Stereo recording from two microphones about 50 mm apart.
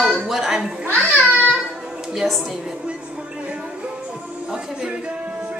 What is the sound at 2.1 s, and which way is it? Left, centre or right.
Speech, centre.